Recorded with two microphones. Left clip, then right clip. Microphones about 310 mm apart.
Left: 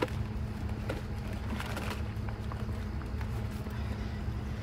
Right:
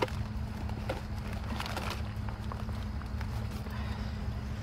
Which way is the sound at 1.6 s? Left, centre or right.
Centre.